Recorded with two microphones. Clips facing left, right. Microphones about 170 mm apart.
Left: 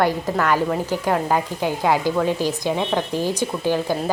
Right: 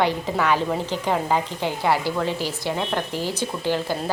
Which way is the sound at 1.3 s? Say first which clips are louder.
Left 2 dB; 10° left (ahead or behind).